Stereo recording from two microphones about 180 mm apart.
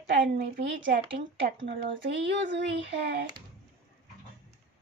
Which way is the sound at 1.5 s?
85° right.